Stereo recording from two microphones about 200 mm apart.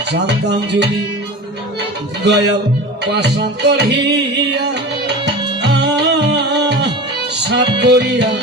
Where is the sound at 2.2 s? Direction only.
60° right (ahead or behind).